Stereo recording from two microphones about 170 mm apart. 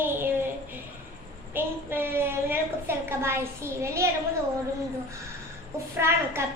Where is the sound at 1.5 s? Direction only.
10° right (ahead or behind).